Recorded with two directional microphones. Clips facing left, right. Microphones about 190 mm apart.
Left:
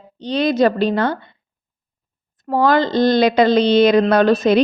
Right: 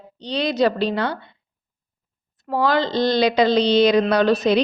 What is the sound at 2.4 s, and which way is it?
Speech, 50° left (ahead or behind).